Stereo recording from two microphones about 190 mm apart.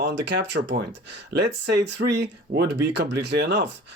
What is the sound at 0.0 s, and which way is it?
Speech, 65° right (ahead or behind).